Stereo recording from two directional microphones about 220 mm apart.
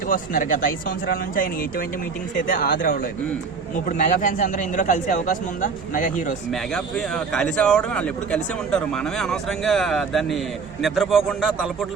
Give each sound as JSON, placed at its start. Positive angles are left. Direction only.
{"t": 0.1, "sound": "a man's voice", "side_deg": 40}
{"t": 2.5, "sound": "a man's voice", "side_deg": 40}
{"t": 6.5, "sound": "a man's voice", "side_deg": 0}